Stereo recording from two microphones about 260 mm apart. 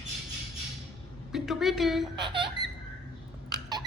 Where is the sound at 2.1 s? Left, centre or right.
Centre.